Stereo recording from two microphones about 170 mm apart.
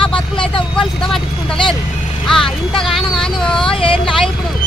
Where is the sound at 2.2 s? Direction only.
Centre (ahead or behind).